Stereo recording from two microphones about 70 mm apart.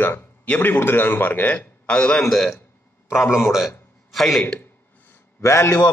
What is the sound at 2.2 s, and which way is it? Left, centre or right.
Speech, centre.